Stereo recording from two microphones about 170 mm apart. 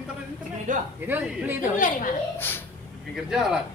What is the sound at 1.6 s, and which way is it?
Speech, 50° left (ahead or behind).